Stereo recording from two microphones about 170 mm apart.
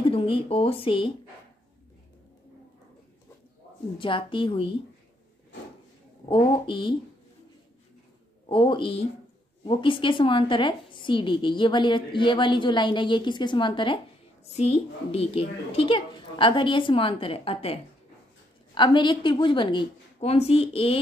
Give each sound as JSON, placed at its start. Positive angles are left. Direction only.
{"t": 0.0, "sound": "speech", "side_deg": 30}
{"t": 4.0, "sound": "a woman's voice", "side_deg": 30}
{"t": 6.2, "sound": "a woman's voice", "side_deg": 30}
{"t": 8.5, "sound": "a woman's voice", "side_deg": 30}
{"t": 18.8, "sound": "a woman's voice", "side_deg": 30}